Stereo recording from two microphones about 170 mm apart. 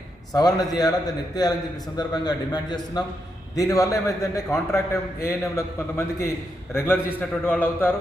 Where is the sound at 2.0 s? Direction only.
25° left (ahead or behind).